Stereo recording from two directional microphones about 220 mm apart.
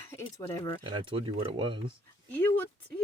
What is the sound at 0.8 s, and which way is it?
Speech, 20° right (ahead or behind).